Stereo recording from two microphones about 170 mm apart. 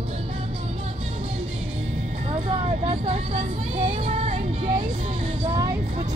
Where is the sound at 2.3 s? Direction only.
40° right (ahead or behind).